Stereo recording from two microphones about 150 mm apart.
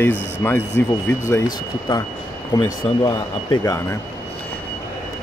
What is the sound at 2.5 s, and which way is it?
Speech, 25° left (ahead or behind).